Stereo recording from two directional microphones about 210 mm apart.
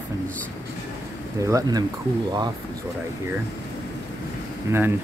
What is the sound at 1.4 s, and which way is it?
Speech, 15° right (ahead or behind).